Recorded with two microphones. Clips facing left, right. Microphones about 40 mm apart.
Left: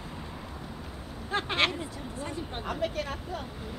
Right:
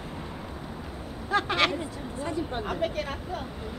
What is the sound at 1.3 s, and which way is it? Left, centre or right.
Speech, left.